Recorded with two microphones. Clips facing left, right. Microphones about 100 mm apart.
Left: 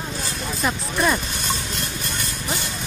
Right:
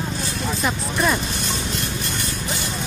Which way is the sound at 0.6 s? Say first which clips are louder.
Left 1 dB; centre (ahead or behind).